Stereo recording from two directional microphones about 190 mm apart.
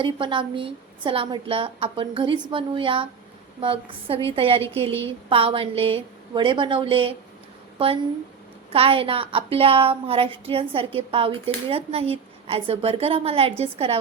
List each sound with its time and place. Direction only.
0.0 s a woman's voice: 25° right (ahead or behind)